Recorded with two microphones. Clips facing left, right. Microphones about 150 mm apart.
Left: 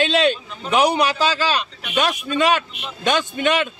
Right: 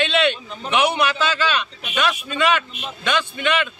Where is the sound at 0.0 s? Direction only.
40° left (ahead or behind).